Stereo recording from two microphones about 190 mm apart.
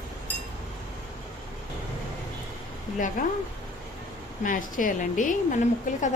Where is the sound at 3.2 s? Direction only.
45° left (ahead or behind).